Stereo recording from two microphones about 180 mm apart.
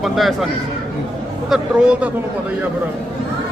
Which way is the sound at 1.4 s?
5° right (ahead or behind).